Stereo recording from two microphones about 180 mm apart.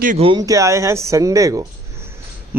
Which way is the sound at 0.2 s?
25° right (ahead or behind).